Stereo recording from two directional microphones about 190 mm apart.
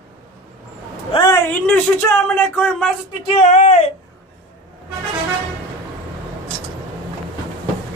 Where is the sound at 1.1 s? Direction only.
20° left (ahead or behind).